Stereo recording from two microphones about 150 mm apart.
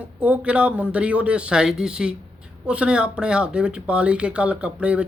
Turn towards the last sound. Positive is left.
turn(degrees=-10)  # may be behind; listen again after turning